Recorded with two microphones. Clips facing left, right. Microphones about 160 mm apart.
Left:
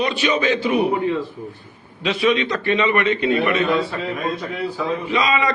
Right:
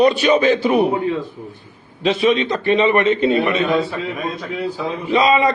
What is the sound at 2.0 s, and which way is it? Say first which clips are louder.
Speech: right 3 dB; 45° right (ahead or behind).